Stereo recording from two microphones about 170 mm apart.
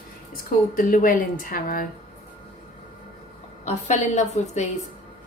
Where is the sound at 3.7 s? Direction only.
45° left (ahead or behind).